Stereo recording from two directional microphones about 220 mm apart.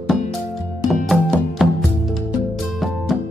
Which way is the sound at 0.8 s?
Centre (ahead or behind).